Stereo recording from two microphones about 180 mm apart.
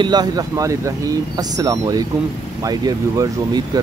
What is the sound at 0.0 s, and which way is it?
Speech, 25° right (ahead or behind).